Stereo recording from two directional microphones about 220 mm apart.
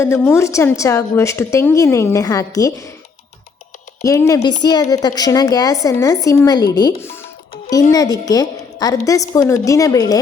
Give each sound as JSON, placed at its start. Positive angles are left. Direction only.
{"t": 0.3, "sound": "a woman's voice", "side_deg": 10}
{"t": 4.0, "sound": "a woman's voice", "side_deg": 15}